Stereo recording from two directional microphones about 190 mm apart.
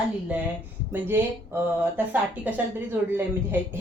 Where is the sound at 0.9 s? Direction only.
10° right (ahead or behind).